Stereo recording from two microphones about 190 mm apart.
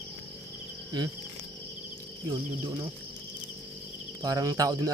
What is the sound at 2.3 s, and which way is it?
Speech, 20° right (ahead or behind).